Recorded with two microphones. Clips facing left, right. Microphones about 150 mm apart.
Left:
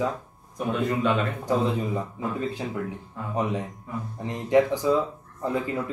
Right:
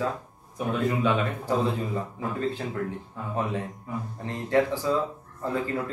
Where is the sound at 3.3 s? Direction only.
15° left (ahead or behind).